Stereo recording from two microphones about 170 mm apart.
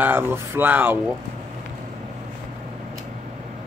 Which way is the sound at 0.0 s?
15° right (ahead or behind).